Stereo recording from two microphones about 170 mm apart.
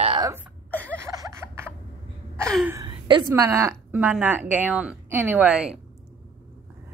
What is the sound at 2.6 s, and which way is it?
Speech, 15° right (ahead or behind).